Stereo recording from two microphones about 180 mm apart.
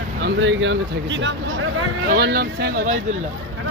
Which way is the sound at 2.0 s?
60° right (ahead or behind).